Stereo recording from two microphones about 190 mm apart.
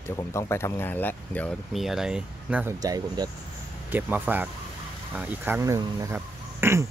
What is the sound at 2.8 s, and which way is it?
Speech, 20° right (ahead or behind).